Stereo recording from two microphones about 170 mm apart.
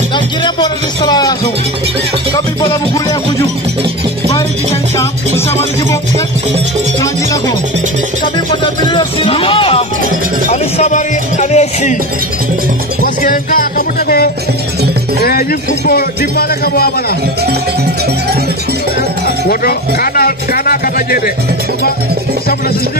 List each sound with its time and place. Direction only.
0.4 s speech: 25° left (ahead or behind)
4.9 s music: 15° left (ahead or behind)
8.9 s music: 30° left (ahead or behind)
10.5 s speech: 45° left (ahead or behind)
13.0 s a man's voice: 55° left (ahead or behind)
19.2 s a sound: 60° left (ahead or behind)